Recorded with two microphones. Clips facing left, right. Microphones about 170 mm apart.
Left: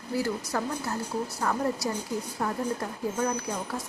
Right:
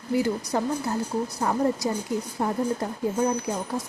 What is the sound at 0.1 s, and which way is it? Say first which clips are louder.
Speech: right 5 dB; 20° right (ahead or behind).